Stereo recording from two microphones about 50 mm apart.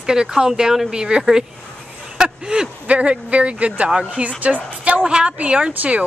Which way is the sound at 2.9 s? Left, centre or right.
Right.